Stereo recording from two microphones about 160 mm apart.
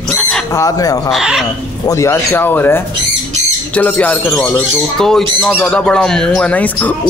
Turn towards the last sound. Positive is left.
turn(degrees=10)  # may be behind; listen again after turning